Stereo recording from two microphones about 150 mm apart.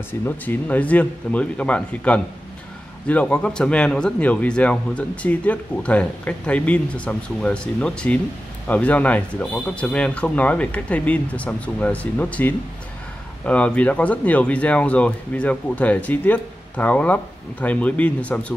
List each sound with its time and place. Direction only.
0.1 s speech: 15° left (ahead or behind)